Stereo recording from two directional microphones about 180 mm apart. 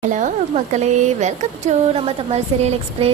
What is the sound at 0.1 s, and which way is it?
Speech, 40° right (ahead or behind).